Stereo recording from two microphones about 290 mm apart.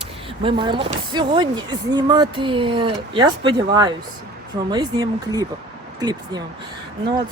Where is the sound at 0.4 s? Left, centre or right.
Centre.